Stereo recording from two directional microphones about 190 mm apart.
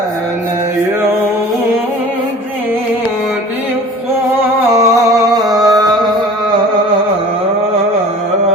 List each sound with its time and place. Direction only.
4.7 s music: 15° right (ahead or behind)